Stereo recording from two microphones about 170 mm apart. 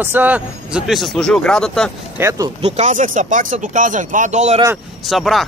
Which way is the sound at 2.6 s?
45° right (ahead or behind).